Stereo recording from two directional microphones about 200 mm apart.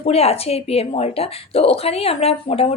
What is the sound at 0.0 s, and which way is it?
Speech, 30° left (ahead or behind).